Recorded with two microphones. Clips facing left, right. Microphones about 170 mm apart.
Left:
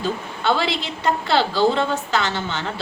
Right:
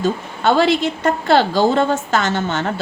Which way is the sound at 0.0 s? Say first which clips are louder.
Right 5 dB; 45° right (ahead or behind).